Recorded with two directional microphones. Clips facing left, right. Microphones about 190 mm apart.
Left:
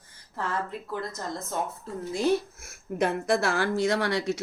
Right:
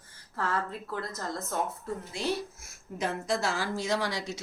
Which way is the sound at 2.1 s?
50° left (ahead or behind).